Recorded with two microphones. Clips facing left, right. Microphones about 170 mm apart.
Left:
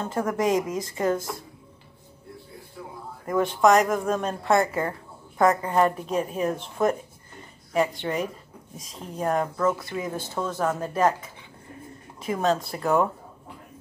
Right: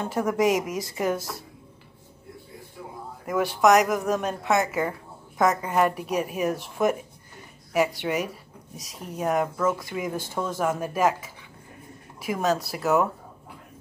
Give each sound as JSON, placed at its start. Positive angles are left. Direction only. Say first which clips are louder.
{"t": 0.0, "sound": "a woman's voice", "louder": "right 2 dB", "side_deg": -10}
{"t": 0.6, "sound": "speech", "louder": "left 2 dB", "side_deg": -90}
{"t": 0.9, "sound": "a woman's voice", "louder": "left 2 dB", "side_deg": -10}
{"t": 3.7, "sound": "a woman's voice", "louder": "even", "side_deg": -10}